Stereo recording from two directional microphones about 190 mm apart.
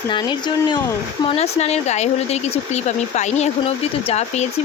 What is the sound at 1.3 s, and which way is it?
Speech, 35° left (ahead or behind).